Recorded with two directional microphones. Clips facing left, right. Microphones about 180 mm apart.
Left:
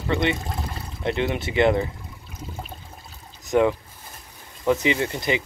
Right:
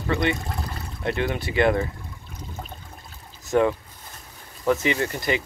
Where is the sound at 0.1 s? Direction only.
20° left (ahead or behind).